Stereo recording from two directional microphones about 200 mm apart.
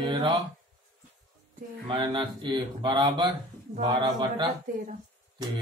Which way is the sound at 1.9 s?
25° right (ahead or behind).